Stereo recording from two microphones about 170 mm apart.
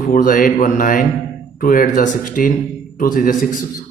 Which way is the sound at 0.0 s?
55° left (ahead or behind).